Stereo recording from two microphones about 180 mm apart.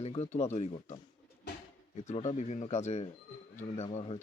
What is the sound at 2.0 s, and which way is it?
Speech, 40° left (ahead or behind).